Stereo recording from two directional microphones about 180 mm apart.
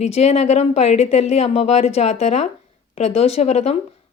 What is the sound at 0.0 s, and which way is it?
A woman's voice, 35° left (ahead or behind).